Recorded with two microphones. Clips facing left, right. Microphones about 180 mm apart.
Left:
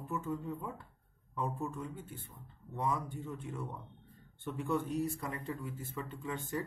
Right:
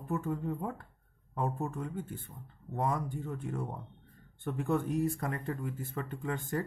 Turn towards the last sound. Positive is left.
turn(degrees=-50)  # may be behind; listen again after turning